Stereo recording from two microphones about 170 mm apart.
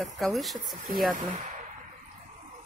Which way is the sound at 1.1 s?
45° right (ahead or behind).